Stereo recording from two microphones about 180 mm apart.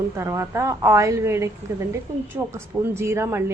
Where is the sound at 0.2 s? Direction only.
15° right (ahead or behind).